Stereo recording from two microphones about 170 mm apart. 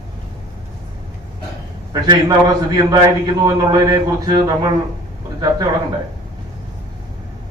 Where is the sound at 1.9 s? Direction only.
25° right (ahead or behind).